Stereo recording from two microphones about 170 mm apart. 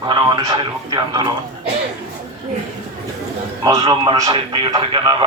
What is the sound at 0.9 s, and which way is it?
Speech, 25° right (ahead or behind).